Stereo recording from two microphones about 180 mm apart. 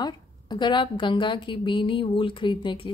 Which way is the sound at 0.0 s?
25° left (ahead or behind).